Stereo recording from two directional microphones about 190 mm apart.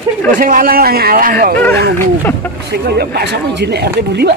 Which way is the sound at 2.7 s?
60° right (ahead or behind).